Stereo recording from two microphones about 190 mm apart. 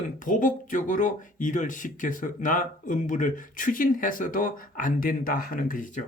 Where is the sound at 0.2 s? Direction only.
45° left (ahead or behind).